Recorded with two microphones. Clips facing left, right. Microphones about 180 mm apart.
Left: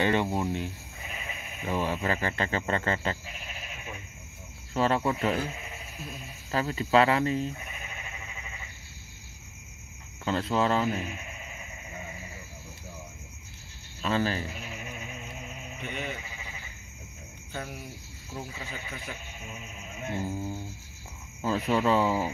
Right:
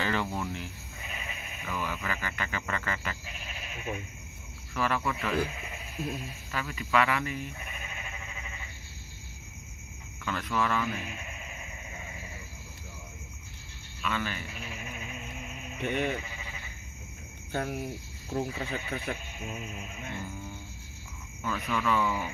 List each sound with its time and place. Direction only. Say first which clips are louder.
0.0 s cricket: left 5 dB; 25° left (ahead or behind)
1.6 s speech: left 6 dB; 30° left (ahead or behind)
4.7 s speech: left 5 dB; 30° left (ahead or behind)
6.5 s speech: left 5 dB; 30° left (ahead or behind)
10.2 s speech: left 4 dB; 30° left (ahead or behind)
14.0 s speech: left 6 dB; 35° left (ahead or behind)
15.8 s speech: right 7 dB; 55° right (ahead or behind)
17.5 s cricket: right 6 dB; 50° right (ahead or behind)
18.3 s speech: right 7 dB; 60° right (ahead or behind)
20.2 s speech: left 7 dB; 35° left (ahead or behind)